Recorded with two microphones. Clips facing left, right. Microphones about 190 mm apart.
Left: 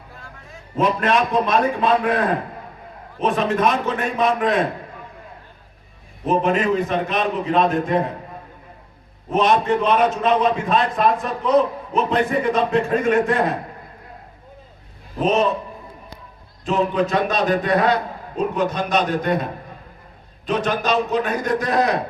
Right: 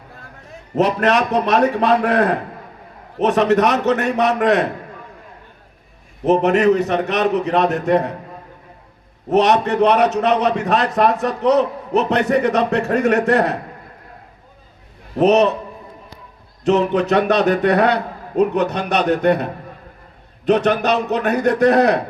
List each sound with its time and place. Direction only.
0.8 s a man's voice: 70° right (ahead or behind)
6.2 s a man's voice: 70° right (ahead or behind)
9.3 s a man's voice: 70° right (ahead or behind)
15.2 s a man's voice: 70° right (ahead or behind)
16.6 s a man's voice: 75° right (ahead or behind)